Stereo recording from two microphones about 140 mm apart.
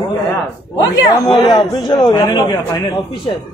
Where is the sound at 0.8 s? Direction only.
25° left (ahead or behind).